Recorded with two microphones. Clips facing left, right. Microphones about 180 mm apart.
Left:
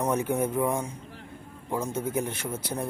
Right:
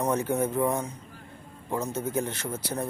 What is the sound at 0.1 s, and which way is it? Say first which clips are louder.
Speech: even; 10° left (ahead or behind).